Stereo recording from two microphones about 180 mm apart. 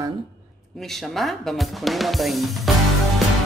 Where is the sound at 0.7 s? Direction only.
Centre (ahead or behind).